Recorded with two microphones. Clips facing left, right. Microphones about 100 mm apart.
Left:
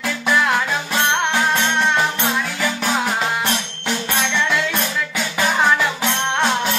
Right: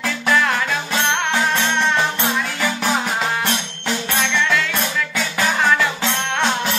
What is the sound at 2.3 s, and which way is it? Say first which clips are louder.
Music: even; centre (ahead or behind).